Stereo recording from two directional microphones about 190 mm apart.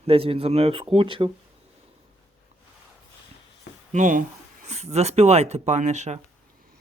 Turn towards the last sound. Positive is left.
turn(degrees=-35)  # may be behind; listen again after turning